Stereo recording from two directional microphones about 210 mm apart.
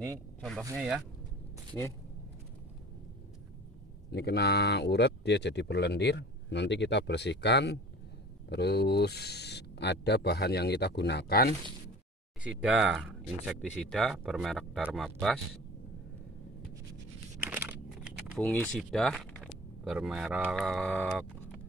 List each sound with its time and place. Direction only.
0.1 s speech: centre (ahead or behind)
4.1 s speech: 50° left (ahead or behind)
12.4 s speech: 5° right (ahead or behind)
17.5 s crumpling: 10° right (ahead or behind)
18.4 s speech: 5° left (ahead or behind)